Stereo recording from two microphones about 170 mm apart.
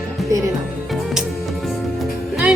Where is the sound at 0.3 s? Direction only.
20° right (ahead or behind).